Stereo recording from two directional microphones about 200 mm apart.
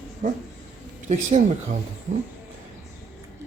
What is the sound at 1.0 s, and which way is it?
Speech, 35° right (ahead or behind).